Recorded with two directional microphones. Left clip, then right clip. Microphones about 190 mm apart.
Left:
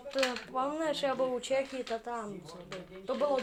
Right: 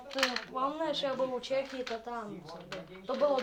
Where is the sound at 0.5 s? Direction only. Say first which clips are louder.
Even; 10° left (ahead or behind).